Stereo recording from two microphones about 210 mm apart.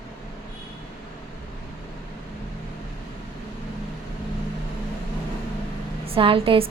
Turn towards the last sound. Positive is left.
turn(degrees=-25)  # may be behind; listen again after turning